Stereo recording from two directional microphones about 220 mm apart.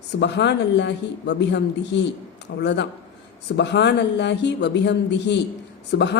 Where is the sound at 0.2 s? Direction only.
50° left (ahead or behind).